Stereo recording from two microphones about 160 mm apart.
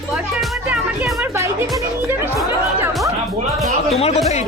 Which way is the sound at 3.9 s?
40° left (ahead or behind).